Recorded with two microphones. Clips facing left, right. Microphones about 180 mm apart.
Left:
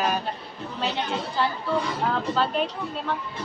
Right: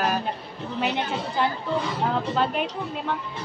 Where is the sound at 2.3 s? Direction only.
15° right (ahead or behind).